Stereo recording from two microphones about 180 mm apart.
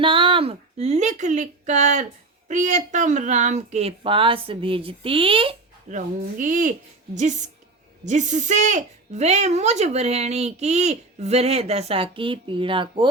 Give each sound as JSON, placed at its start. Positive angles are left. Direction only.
{"t": 0.0, "sound": "a sound", "side_deg": -30}
{"t": 2.5, "sound": "a woman's voice", "side_deg": -45}
{"t": 5.9, "sound": "a woman's voice", "side_deg": -45}